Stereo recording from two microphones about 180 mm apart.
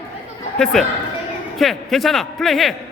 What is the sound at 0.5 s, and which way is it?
A man's voice, 5° left (ahead or behind).